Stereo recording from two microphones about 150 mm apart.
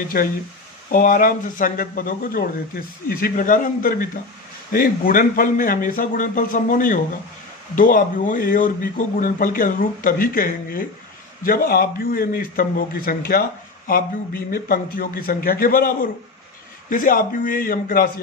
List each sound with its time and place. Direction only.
0.1 s speech: 70° left (ahead or behind)
14.5 s speech: 75° left (ahead or behind)